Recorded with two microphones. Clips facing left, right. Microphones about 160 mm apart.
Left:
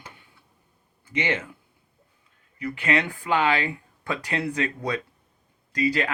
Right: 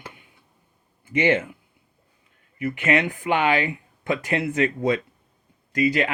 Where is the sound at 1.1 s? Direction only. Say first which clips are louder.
Right 7 dB; 30° right (ahead or behind).